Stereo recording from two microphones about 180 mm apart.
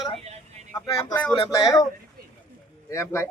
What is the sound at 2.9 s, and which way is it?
Speech, 15° left (ahead or behind).